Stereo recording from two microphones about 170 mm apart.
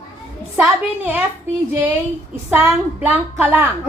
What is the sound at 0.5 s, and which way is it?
Speech, 10° right (ahead or behind).